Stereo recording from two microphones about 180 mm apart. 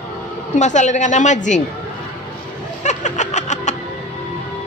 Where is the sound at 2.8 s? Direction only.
40° left (ahead or behind).